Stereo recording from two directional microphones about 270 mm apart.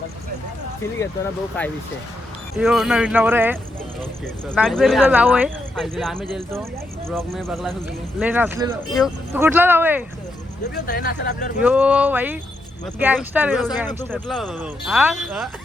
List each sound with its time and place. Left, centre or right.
0.9 s speech: centre
6.3 s speech: centre
7.2 s speech: centre
10.8 s speech: left
11.6 s speech: centre